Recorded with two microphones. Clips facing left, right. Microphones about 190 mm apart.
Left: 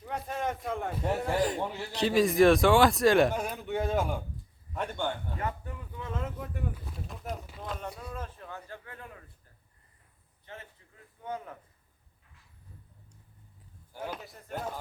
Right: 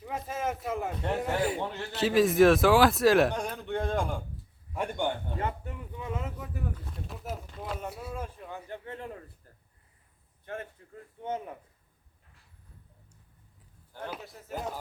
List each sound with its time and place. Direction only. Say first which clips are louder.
0.0 s a man's voice: even; centre (ahead or behind)
1.4 s a man's voice: left 1 dB; 5° right (ahead or behind)
4.7 s a man's voice: right 2 dB; 15° right (ahead or behind)
5.4 s a sound: right 2 dB; 25° right (ahead or behind)
6.0 s boat: even; 10° right (ahead or behind)
7.6 s a sound: right 2 dB; 5° right (ahead or behind); by 9.2 s 30° right (ahead or behind)
10.4 s speech: right 8 dB; 55° right (ahead or behind)
11.2 s speech: right 3 dB; 20° right (ahead or behind)
14.1 s a man's voice: right 2 dB; centre (ahead or behind)